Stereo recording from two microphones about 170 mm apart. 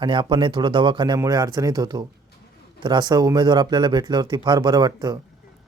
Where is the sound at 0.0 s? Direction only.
30° right (ahead or behind).